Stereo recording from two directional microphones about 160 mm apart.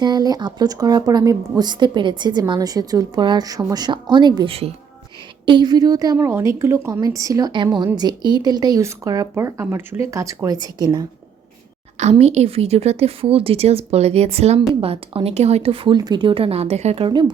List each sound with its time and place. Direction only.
0.0 s a woman's voice: 25° right (ahead or behind)
12.2 s speech: 40° right (ahead or behind)